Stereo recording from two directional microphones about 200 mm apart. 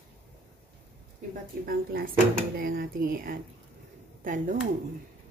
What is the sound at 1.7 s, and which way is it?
Speech, 45° right (ahead or behind).